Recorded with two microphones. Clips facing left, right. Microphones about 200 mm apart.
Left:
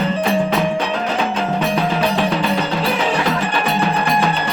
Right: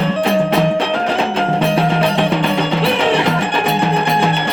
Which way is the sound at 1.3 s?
30° right (ahead or behind).